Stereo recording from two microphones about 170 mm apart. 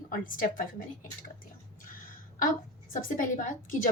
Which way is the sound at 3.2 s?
50° left (ahead or behind).